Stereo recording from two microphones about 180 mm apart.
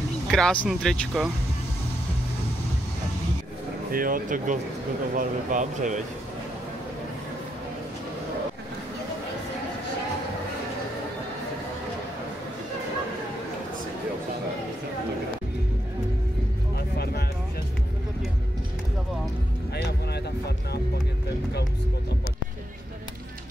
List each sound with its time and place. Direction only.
0.3 s speech: 5° left (ahead or behind)
3.9 s speech: 50° right (ahead or behind)
16.7 s music: 65° left (ahead or behind)
19.7 s music: 65° left (ahead or behind)